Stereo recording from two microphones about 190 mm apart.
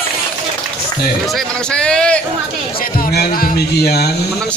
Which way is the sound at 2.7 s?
50° left (ahead or behind).